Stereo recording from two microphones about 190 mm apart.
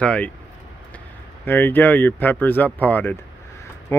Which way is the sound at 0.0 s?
5° left (ahead or behind).